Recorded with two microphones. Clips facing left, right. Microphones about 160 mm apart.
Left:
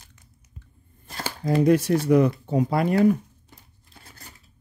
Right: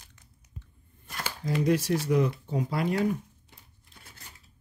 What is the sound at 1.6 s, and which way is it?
Speech, 55° left (ahead or behind).